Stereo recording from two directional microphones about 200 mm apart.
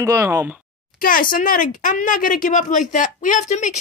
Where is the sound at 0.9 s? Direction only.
45° left (ahead or behind).